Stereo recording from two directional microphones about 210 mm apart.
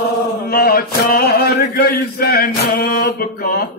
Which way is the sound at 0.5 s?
45° left (ahead or behind).